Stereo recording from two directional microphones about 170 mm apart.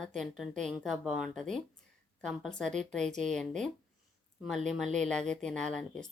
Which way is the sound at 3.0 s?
45° right (ahead or behind).